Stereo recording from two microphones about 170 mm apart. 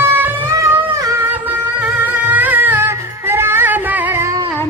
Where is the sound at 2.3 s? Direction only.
10° right (ahead or behind).